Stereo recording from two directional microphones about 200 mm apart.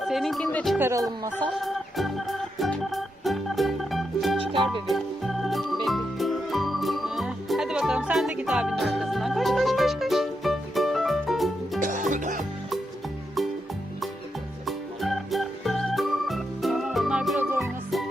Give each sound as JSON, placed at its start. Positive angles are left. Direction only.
{"t": 0.0, "sound": "speech", "side_deg": 0}
{"t": 0.8, "sound": "speech", "side_deg": -15}
{"t": 1.4, "sound": "music", "side_deg": 0}
{"t": 4.5, "sound": "music", "side_deg": -25}
{"t": 4.9, "sound": "organ", "side_deg": 0}
{"t": 11.8, "sound": "music", "side_deg": -40}
{"t": 14.7, "sound": "music", "side_deg": 0}